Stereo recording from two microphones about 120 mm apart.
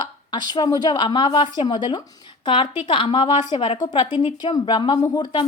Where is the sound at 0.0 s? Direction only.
35° left (ahead or behind).